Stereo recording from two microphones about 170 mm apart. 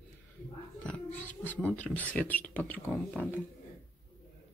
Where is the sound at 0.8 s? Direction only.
10° left (ahead or behind).